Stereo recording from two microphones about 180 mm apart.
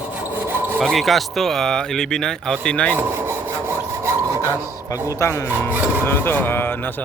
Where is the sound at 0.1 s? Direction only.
10° right (ahead or behind).